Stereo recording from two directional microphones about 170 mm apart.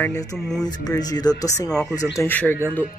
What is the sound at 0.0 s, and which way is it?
A woman's voice, 20° left (ahead or behind).